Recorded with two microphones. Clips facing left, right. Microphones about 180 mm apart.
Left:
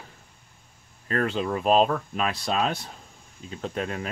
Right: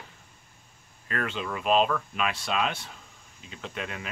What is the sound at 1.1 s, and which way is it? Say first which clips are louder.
Speech: left 6 dB; 35° left (ahead or behind).